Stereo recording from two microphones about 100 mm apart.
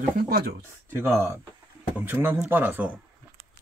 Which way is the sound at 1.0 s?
25° right (ahead or behind).